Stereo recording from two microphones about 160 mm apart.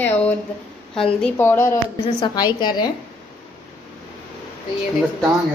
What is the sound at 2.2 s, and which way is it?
Speech, 25° left (ahead or behind).